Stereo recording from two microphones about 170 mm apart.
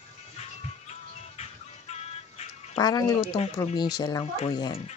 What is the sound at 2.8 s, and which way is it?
Speech, 20° left (ahead or behind).